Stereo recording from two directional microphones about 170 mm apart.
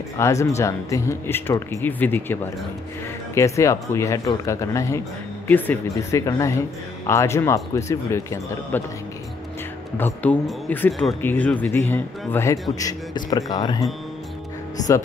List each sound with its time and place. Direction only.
0.2 s speech: 15° left (ahead or behind)
3.3 s speech: 20° left (ahead or behind)
9.9 s speech: 10° left (ahead or behind)
10.9 s speech: centre (ahead or behind)
11.1 s speech: 10° left (ahead or behind)